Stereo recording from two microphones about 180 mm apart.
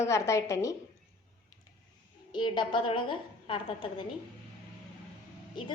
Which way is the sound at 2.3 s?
25° left (ahead or behind).